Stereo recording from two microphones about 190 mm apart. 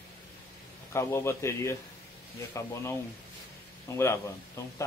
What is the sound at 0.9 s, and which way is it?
Speech, 15° left (ahead or behind).